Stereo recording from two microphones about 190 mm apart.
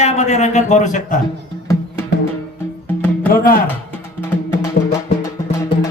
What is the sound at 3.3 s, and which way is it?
Speech, 50° left (ahead or behind).